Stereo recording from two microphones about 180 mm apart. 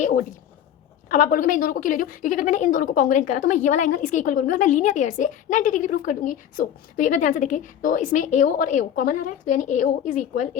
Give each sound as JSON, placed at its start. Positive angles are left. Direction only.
{"t": 1.1, "sound": "a woman's voice", "side_deg": 50}